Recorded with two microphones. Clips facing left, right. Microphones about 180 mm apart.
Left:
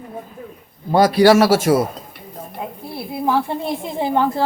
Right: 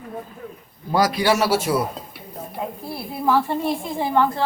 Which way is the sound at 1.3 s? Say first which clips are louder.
Left 6 dB; 90° left.